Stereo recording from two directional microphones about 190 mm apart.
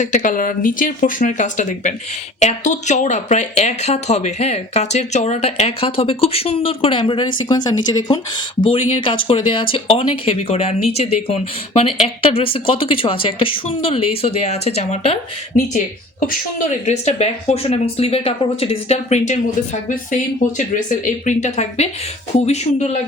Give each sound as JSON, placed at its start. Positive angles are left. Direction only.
{"t": 0.0, "sound": "speech", "side_deg": 45}
{"t": 16.8, "sound": "speech", "side_deg": 35}
{"t": 20.7, "sound": "speech", "side_deg": 40}